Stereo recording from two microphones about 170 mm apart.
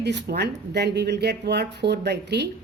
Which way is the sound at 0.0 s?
85° right.